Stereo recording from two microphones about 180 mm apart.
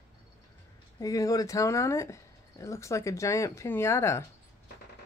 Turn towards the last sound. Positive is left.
turn(degrees=15)  # may be behind; listen again after turning